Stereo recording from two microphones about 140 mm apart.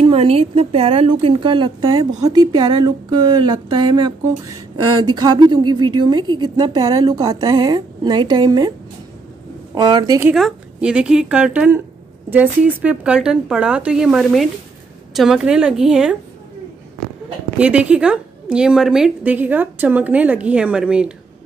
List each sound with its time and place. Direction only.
0.0 s a woman's voice: 45° right (ahead or behind)
9.8 s speech: 30° right (ahead or behind)
10.3 s a woman's voice: 5° right (ahead or behind)
17.6 s a woman's voice: 10° right (ahead or behind)